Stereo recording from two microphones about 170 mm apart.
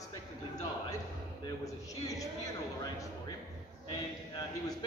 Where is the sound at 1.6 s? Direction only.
20° left (ahead or behind).